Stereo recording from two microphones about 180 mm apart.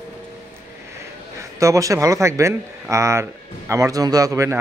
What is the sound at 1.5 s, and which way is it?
A man's voice, 15° right (ahead or behind).